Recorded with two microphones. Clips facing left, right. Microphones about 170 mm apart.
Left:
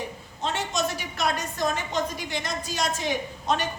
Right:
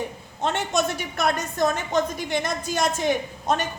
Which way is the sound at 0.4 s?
55° right (ahead or behind).